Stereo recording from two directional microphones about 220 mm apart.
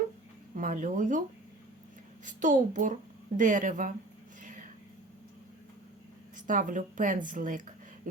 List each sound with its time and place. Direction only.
0.5 s a woman's voice: 35° right (ahead or behind)
2.2 s a woman's voice: 35° right (ahead or behind)
4.4 s a sound: 35° right (ahead or behind)
6.3 s a woman's voice: 35° right (ahead or behind)